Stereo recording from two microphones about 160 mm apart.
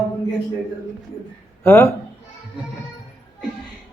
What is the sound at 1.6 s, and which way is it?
Speech, 15° left (ahead or behind).